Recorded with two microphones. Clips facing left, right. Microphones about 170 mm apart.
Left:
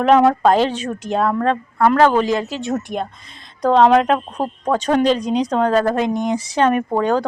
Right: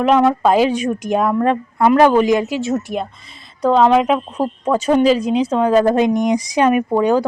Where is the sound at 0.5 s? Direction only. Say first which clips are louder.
Right 3 dB; 10° right (ahead or behind).